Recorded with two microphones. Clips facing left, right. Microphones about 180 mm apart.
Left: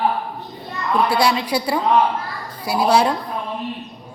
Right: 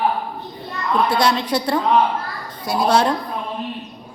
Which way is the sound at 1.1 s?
5° left (ahead or behind).